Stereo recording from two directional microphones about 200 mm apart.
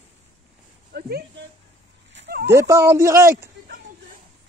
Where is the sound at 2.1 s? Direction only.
55° right (ahead or behind).